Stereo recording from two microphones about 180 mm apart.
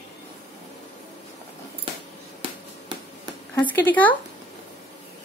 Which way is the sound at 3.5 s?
10° left (ahead or behind).